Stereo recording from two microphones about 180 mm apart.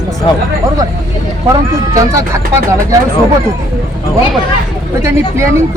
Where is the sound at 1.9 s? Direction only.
20° right (ahead or behind).